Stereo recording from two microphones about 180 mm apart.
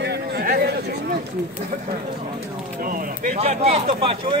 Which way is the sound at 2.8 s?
50° right (ahead or behind).